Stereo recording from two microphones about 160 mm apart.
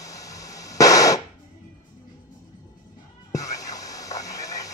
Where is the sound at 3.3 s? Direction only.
20° left (ahead or behind).